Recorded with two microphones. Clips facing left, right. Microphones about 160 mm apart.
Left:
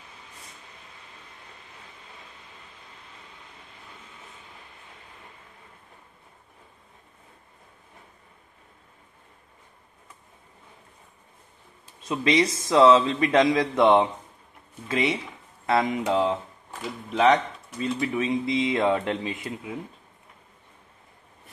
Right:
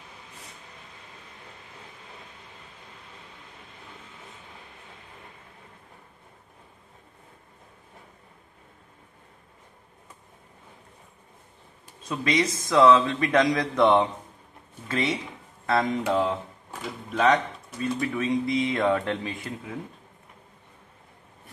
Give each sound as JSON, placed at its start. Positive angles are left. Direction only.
{"t": 12.1, "sound": "speech", "side_deg": 25}
{"t": 17.7, "sound": "speech", "side_deg": 20}